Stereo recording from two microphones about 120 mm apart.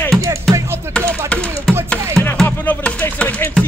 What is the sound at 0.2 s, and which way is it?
Music, 25° right (ahead or behind).